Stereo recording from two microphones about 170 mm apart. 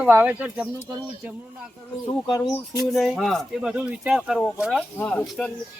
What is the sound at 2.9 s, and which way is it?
Speech, centre (ahead or behind).